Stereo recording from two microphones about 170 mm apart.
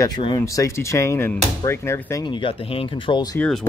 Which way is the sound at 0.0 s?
25° left (ahead or behind).